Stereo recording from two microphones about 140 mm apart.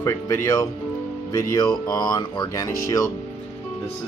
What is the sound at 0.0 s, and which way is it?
Speech, 20° left (ahead or behind).